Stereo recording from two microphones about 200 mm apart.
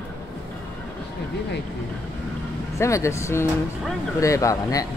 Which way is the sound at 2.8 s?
15° left (ahead or behind).